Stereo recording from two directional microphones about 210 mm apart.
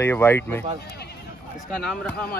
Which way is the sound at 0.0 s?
10° left (ahead or behind).